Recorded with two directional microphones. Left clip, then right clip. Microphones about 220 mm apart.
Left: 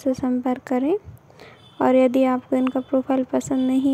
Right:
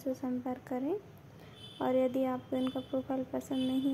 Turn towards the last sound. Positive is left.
turn(degrees=40)  # may be behind; listen again after turning